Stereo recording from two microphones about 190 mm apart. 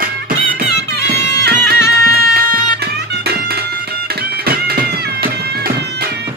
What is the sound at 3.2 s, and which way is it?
Music, 55° right (ahead or behind).